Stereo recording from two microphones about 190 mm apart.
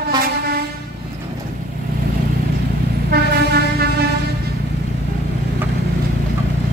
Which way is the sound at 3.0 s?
55° right (ahead or behind).